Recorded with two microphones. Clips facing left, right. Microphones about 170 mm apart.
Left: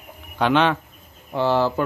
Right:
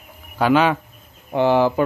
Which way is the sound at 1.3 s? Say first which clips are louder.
Right 4 dB; 15° right (ahead or behind).